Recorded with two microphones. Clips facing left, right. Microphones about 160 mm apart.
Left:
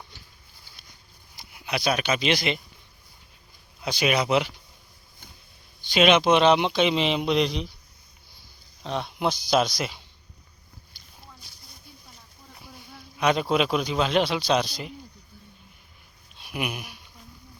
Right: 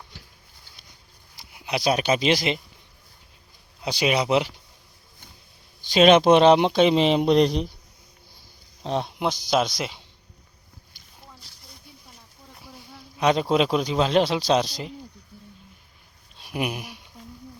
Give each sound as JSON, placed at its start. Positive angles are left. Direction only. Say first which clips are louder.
{"t": 1.5, "sound": "a sound", "louder": "right 2 dB", "side_deg": -20}
{"t": 1.8, "sound": "speech", "louder": "right 4 dB", "side_deg": -35}
{"t": 4.0, "sound": "speech", "louder": "right 1 dB", "side_deg": -20}
{"t": 5.9, "sound": "speech", "louder": "right 4 dB", "side_deg": -40}
{"t": 8.8, "sound": "speech", "louder": "right 4 dB", "side_deg": -35}
{"t": 9.1, "sound": "speech", "louder": "left 2 dB", "side_deg": -15}
{"t": 13.1, "sound": "speech", "louder": "right 2 dB", "side_deg": -30}
{"t": 16.4, "sound": "speech", "louder": "right 3 dB", "side_deg": -35}